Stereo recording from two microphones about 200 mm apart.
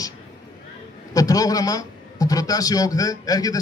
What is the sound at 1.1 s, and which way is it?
A man's voice, 15° left (ahead or behind).